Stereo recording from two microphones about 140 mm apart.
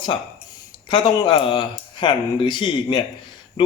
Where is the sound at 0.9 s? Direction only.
35° left (ahead or behind).